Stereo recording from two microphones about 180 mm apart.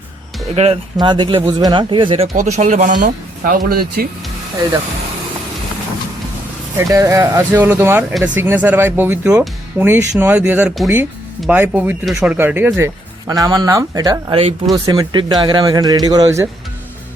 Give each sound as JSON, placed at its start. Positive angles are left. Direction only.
{"t": 0.5, "sound": "speech", "side_deg": -35}
{"t": 2.3, "sound": "speech", "side_deg": -45}
{"t": 3.0, "sound": "speech", "side_deg": -55}
{"t": 6.7, "sound": "speech", "side_deg": -15}
{"t": 14.7, "sound": "speech", "side_deg": -20}